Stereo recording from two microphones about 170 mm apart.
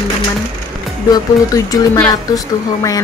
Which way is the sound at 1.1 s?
20° left (ahead or behind).